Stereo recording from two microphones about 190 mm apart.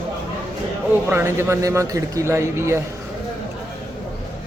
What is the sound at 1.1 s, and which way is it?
A man's voice, 15° right (ahead or behind).